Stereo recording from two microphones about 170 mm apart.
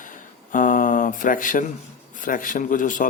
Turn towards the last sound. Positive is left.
turn(degrees=50)  # may be behind; listen again after turning